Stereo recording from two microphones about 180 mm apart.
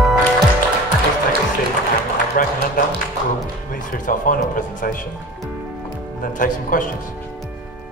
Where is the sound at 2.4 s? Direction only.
50° left (ahead or behind).